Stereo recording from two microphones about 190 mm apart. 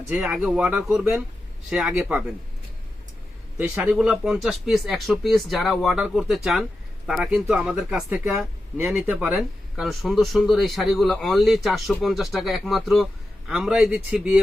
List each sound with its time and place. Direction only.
0.1 s speech: 5° right (ahead or behind)
3.6 s speech: 5° right (ahead or behind)